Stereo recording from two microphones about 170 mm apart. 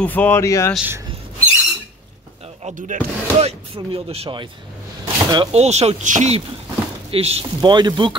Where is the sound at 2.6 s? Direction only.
50° right (ahead or behind).